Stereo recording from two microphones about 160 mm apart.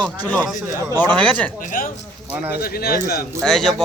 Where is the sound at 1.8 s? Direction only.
60° left (ahead or behind).